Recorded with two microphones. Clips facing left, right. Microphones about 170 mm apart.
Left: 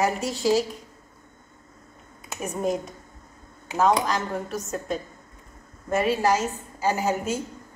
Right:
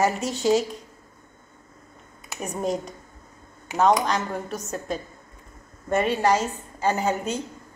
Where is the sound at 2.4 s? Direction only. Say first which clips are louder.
Left 1 dB; centre (ahead or behind).